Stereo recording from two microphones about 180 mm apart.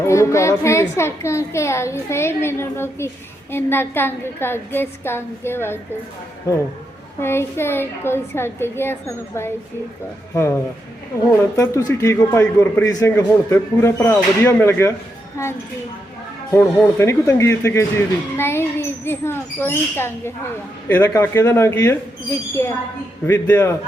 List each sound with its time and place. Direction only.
0.0 s a man's voice: 15° left (ahead or behind)
7.2 s a man's voice: 15° left (ahead or behind)
16.5 s a man's voice: 15° left (ahead or behind)
23.2 s a man's voice: 10° left (ahead or behind)